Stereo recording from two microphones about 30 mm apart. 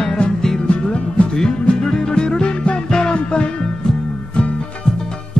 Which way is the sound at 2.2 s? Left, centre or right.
Left.